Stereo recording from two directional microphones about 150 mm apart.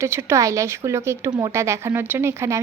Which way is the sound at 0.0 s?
15° right (ahead or behind).